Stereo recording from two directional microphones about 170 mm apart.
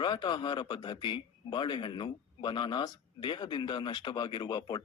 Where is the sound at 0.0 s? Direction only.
30° left (ahead or behind).